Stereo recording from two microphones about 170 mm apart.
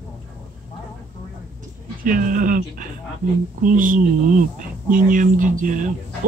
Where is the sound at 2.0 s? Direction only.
55° right (ahead or behind).